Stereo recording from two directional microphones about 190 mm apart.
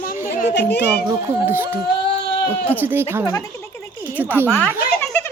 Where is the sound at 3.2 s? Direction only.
20° left (ahead or behind).